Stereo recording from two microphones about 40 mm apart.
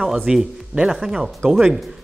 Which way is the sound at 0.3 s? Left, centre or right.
Centre.